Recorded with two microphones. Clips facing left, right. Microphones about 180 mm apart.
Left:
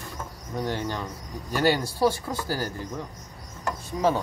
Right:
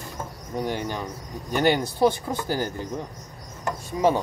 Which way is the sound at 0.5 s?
15° right (ahead or behind).